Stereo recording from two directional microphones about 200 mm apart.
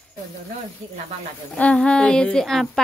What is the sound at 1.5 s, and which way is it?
A woman's voice, 5° left (ahead or behind).